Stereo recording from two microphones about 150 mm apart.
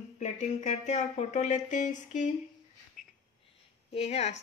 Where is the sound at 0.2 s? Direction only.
55° left (ahead or behind).